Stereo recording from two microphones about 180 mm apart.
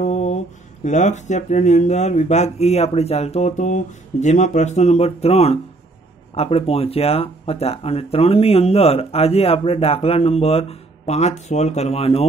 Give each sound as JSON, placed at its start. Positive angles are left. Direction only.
{"t": 0.0, "sound": "mantra", "side_deg": 40}
{"t": 0.8, "sound": "speech", "side_deg": 40}